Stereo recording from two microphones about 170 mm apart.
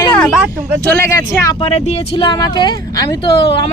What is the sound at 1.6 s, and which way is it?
Speech, 35° left (ahead or behind).